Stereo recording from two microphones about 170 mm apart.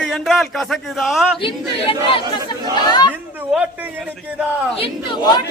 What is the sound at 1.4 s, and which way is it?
Speech, 30° left (ahead or behind).